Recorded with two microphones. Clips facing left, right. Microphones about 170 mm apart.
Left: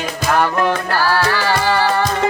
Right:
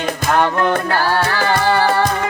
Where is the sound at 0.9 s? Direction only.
20° right (ahead or behind).